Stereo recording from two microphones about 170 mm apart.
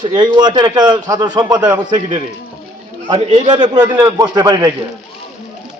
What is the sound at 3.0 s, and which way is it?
A man's voice, 25° right (ahead or behind).